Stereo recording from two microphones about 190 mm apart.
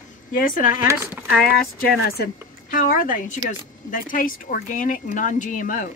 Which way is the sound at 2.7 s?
45° left (ahead or behind).